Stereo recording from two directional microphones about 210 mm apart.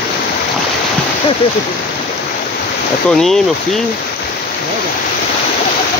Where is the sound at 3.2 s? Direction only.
Centre (ahead or behind).